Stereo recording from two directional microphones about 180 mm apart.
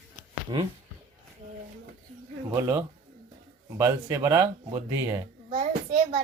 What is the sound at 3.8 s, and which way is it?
Speech, 20° right (ahead or behind).